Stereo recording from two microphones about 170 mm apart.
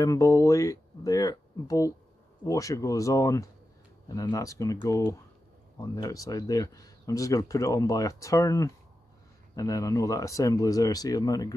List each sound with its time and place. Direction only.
0.0 s speech: 20° left (ahead or behind)